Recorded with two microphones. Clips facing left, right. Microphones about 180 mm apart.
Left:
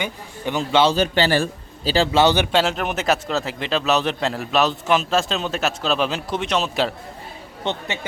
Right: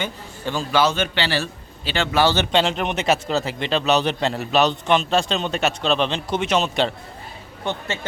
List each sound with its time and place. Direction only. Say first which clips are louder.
0.0 s a man's voice: left 1 dB; 20° left (ahead or behind); by 2.0 s 40° left (ahead or behind)
2.1 s speech: even; 15° left (ahead or behind)
7.6 s speech: left 1 dB; 20° left (ahead or behind)